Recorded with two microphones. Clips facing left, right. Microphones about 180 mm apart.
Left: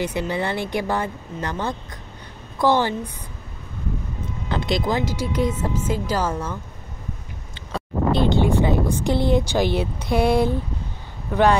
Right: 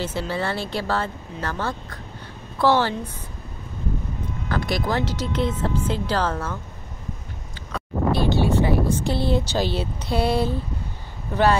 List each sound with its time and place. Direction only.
0.0 s speech: 15° left (ahead or behind)
4.5 s speech: 20° left (ahead or behind)
7.7 s speech: 20° left (ahead or behind)